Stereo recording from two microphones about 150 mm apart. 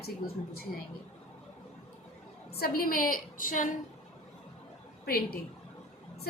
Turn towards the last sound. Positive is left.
turn(degrees=85)